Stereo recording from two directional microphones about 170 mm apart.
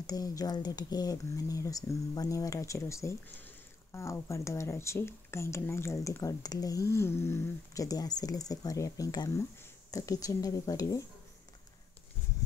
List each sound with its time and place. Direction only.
0.0 s speech: 20° left (ahead or behind)